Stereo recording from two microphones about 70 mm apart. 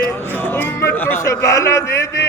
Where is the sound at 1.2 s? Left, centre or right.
Left.